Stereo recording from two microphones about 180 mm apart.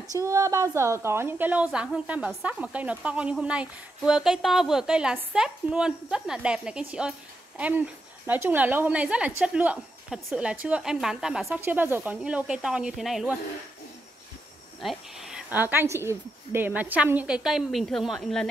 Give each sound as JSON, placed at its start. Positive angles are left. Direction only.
{"t": 0.1, "sound": "a woman's voice", "side_deg": -20}
{"t": 14.8, "sound": "a woman's voice", "side_deg": 0}